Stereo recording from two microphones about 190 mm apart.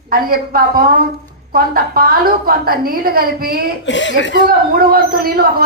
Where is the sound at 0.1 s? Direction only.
50° right (ahead or behind).